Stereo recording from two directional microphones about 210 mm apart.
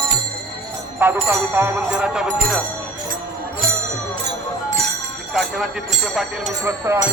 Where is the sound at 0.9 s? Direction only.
10° right (ahead or behind).